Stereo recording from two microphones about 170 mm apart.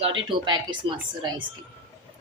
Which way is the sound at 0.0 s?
30° right (ahead or behind).